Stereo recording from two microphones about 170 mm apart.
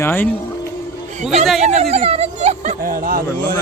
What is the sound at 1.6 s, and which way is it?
Speech, 40° right (ahead or behind).